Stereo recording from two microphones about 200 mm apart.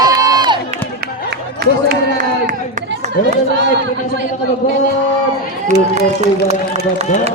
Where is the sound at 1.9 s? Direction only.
40° right (ahead or behind).